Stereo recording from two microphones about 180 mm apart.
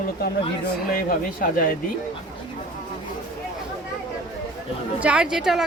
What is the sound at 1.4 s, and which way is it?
Speech, 55° left (ahead or behind).